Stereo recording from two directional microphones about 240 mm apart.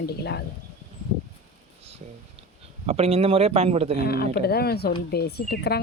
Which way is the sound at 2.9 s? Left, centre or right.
Right.